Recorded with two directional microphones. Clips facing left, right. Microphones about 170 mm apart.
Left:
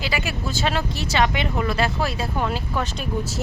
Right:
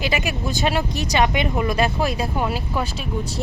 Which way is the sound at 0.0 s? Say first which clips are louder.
Right 3 dB; 15° right (ahead or behind).